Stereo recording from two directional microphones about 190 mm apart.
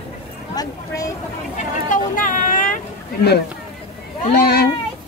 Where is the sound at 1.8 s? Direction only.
45° left (ahead or behind).